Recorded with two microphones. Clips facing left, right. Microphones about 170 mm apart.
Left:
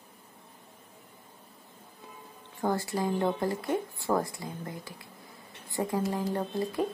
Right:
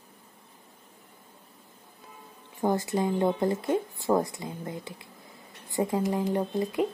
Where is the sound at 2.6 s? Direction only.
20° right (ahead or behind).